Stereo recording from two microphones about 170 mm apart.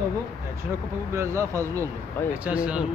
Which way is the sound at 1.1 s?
15° right (ahead or behind).